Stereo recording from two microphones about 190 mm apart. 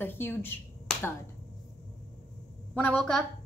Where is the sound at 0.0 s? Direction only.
10° left (ahead or behind).